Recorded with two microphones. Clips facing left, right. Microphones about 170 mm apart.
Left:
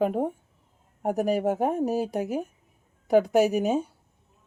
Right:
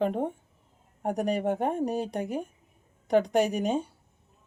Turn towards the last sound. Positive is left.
turn(degrees=5)  # may be behind; listen again after turning